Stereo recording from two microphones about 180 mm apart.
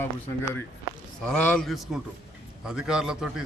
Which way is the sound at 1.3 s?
5° left (ahead or behind).